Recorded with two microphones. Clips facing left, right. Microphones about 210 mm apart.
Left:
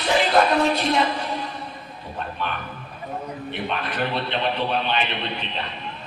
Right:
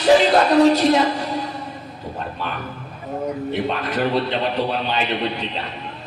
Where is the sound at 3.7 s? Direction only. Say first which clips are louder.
Right 2 dB; 40° right (ahead or behind).